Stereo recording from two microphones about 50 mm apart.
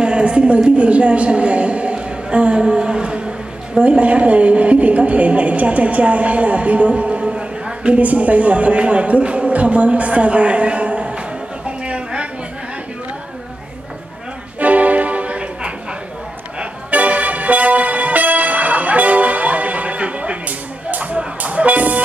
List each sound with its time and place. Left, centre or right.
0.0 s a woman's voice: centre
11.6 s a sound: right
14.6 s music: right
16.9 s music: right